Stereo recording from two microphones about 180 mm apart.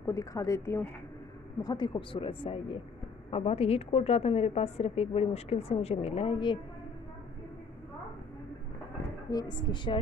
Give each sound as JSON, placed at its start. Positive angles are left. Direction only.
{"t": 0.0, "sound": "a woman's voice", "side_deg": 20}
{"t": 9.3, "sound": "speech", "side_deg": 25}